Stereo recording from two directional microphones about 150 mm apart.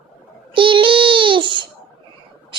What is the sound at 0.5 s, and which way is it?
Child singing, 35° right (ahead or behind).